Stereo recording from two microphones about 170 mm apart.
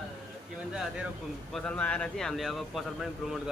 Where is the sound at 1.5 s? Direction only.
5° left (ahead or behind).